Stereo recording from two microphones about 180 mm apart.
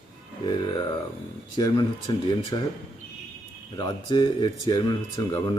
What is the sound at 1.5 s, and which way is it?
Speech, 25° left (ahead or behind).